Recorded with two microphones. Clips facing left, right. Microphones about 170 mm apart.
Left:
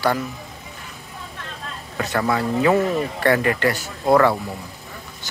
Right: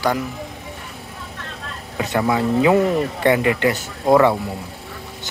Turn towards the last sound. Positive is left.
turn(degrees=-15)  # may be behind; listen again after turning